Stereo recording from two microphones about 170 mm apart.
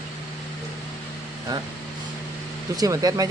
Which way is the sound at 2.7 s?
20° right (ahead or behind).